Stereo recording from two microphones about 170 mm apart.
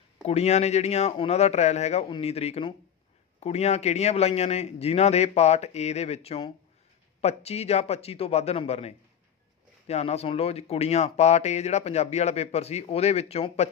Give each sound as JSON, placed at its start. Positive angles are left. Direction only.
{"t": 0.3, "sound": "speech", "side_deg": 40}